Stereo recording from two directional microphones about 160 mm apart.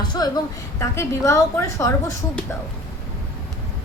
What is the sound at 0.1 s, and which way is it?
A woman's voice, 25° left (ahead or behind).